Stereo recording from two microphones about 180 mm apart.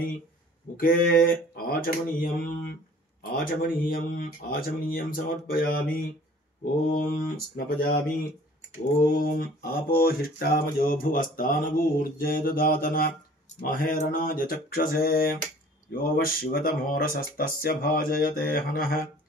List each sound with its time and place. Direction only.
0.7 s speech: 55° left (ahead or behind)
9.0 s speech: 55° left (ahead or behind)